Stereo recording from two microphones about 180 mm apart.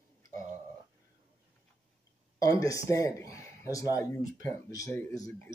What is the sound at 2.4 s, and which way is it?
Speech, 20° left (ahead or behind).